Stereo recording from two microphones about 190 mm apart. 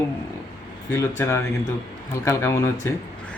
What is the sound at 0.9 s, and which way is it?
Speech, 15° left (ahead or behind).